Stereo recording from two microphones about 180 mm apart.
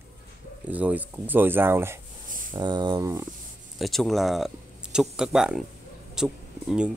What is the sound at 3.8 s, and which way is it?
Speech, centre (ahead or behind).